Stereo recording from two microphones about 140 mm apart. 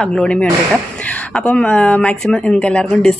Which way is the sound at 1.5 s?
10° left (ahead or behind).